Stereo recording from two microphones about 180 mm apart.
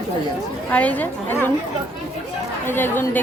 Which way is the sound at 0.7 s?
10° left (ahead or behind).